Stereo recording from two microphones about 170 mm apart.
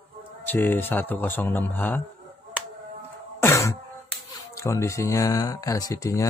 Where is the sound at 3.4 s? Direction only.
15° left (ahead or behind).